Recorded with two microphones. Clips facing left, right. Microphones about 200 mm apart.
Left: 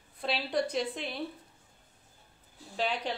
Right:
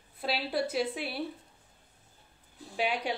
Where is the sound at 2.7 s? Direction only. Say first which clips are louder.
Right 1 dB; 10° right (ahead or behind).